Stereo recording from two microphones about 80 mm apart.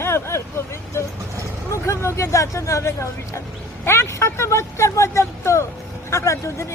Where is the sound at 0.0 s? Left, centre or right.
Left.